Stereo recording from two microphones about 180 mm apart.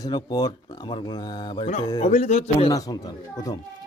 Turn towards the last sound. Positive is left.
turn(degrees=20)  # may be behind; listen again after turning